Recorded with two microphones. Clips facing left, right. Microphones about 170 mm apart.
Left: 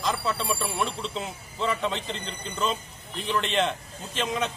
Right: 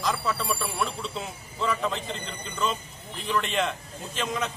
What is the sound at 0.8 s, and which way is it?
Speech, centre (ahead or behind).